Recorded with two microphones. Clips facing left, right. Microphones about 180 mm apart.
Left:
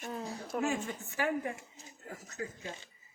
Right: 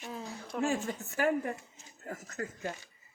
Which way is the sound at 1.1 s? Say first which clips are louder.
Right 3 dB; 45° right (ahead or behind).